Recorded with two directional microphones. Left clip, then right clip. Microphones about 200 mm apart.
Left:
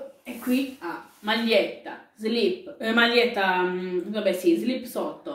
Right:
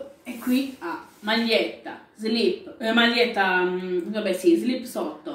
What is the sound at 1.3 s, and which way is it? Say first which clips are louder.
A woman's voice: even; centre (ahead or behind).